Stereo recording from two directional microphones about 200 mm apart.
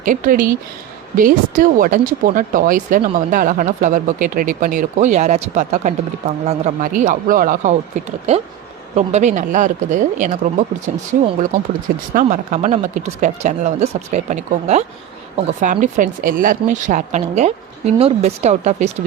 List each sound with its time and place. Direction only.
0.0 s speech: 40° right (ahead or behind)